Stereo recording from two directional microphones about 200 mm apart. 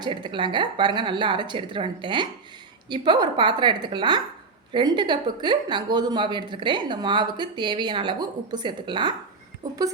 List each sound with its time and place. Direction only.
0.0 s speech: 25° right (ahead or behind)